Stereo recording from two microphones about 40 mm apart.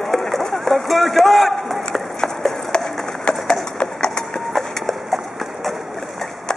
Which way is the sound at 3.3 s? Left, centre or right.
Left.